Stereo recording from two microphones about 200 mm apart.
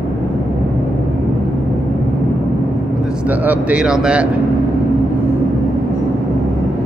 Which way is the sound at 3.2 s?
5° right (ahead or behind).